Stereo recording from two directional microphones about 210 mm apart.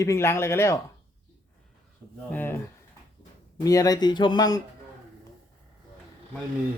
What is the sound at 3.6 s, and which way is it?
Speech, 15° left (ahead or behind).